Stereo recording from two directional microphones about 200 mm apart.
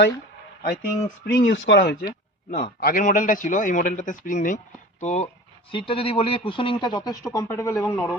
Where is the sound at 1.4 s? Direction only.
65° left (ahead or behind).